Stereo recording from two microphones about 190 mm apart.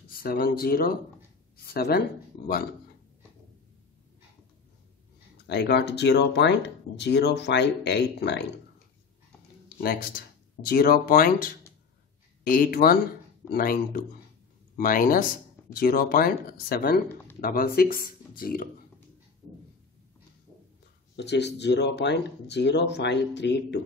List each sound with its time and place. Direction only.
0.1 s speech: 50° left (ahead or behind)
5.5 s speech: 60° left (ahead or behind)
9.8 s speech: 50° left (ahead or behind)
21.2 s speech: 65° left (ahead or behind)